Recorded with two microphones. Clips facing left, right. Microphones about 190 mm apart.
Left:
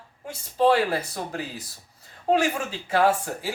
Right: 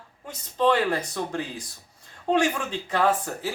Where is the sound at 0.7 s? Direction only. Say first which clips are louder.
Left 1 dB; 5° left (ahead or behind).